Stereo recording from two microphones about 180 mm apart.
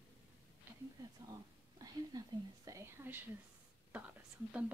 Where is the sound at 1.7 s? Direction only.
20° right (ahead or behind).